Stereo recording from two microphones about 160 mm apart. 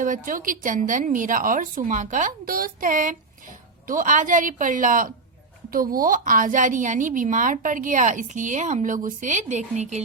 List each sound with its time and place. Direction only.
0.0 s a woman's voice: 55° right (ahead or behind)